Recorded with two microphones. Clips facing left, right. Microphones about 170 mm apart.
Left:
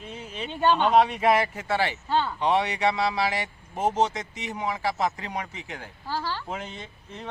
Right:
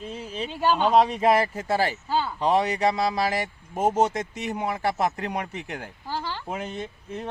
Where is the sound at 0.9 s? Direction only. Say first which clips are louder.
Right 1 dB; 35° right (ahead or behind).